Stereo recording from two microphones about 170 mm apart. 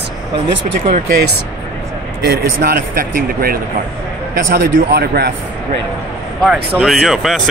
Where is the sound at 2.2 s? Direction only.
65° right (ahead or behind).